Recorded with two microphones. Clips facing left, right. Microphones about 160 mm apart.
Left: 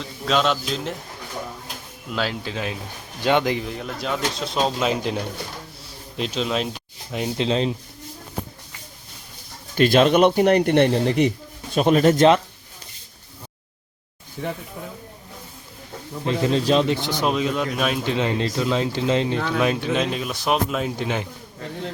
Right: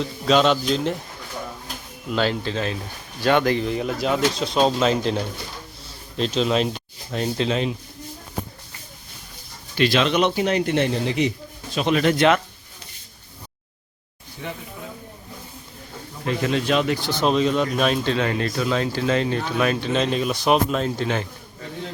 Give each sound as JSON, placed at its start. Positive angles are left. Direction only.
{"t": 0.0, "sound": "speech", "side_deg": 0}
{"t": 2.1, "sound": "speech", "side_deg": 5}
{"t": 3.6, "sound": "speech", "side_deg": 0}
{"t": 9.7, "sound": "speech", "side_deg": 45}
{"t": 11.7, "sound": "speech", "side_deg": 45}
{"t": 16.2, "sound": "speech", "side_deg": 30}
{"t": 17.1, "sound": "speech", "side_deg": 10}